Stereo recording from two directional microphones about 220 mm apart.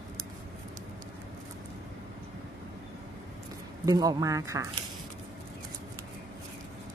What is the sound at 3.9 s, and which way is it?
Speech, 15° right (ahead or behind).